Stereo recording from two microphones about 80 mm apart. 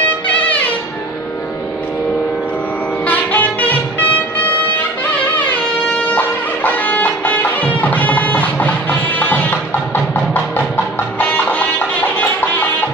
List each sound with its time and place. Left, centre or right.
3.1 s music: centre
6.1 s music: left